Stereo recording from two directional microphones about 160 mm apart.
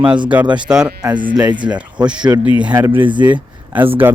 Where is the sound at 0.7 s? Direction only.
5° right (ahead or behind).